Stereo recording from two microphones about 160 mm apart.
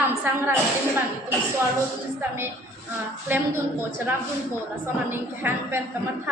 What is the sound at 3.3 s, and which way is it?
Speech, 10° right (ahead or behind).